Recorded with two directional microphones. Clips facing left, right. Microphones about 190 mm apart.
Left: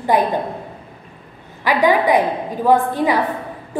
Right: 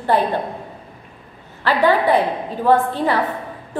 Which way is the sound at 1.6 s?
15° left (ahead or behind).